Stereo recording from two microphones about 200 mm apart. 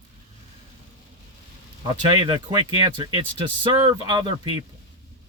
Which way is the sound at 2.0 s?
25° right (ahead or behind).